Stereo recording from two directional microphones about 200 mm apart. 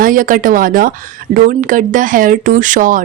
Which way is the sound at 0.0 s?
40° right (ahead or behind).